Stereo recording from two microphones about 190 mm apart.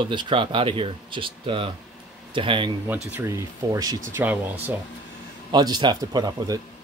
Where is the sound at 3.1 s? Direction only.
15° right (ahead or behind).